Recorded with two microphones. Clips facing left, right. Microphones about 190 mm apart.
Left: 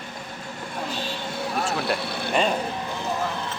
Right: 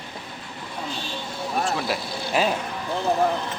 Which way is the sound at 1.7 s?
Centre (ahead or behind).